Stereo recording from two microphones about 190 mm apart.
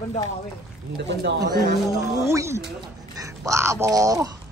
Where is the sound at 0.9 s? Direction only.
65° right (ahead or behind).